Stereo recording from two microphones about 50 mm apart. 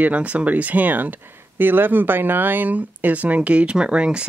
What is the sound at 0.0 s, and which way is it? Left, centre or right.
Speech, right.